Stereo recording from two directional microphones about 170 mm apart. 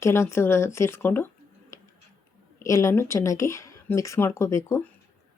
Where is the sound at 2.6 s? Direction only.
20° left (ahead or behind).